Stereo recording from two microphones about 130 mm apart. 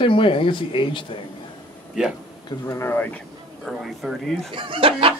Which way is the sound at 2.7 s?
20° left (ahead or behind).